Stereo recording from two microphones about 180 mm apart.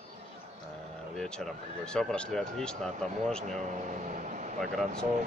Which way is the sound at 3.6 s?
45° right (ahead or behind).